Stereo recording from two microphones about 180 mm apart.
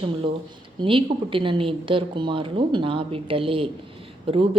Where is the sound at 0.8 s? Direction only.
30° right (ahead or behind).